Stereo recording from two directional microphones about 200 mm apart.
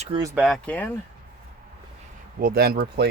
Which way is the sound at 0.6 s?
5° left (ahead or behind).